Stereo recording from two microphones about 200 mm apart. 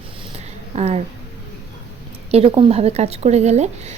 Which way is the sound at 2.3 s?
30° right (ahead or behind).